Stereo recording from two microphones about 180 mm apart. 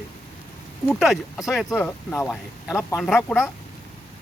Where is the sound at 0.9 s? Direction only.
Centre (ahead or behind).